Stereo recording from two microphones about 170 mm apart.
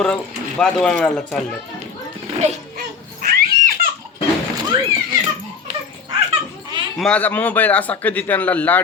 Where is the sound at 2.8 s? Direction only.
65° right (ahead or behind).